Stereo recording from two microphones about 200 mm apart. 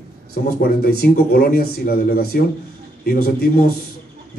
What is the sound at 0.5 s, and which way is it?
A man's voice, 50° left (ahead or behind).